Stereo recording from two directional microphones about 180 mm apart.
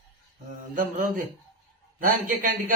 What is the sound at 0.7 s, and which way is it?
A man's voice, 50° right (ahead or behind).